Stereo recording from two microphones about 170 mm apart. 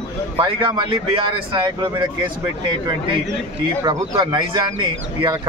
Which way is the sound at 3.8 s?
25° right (ahead or behind).